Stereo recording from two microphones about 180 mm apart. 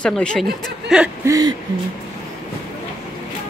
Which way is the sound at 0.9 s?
5° right (ahead or behind).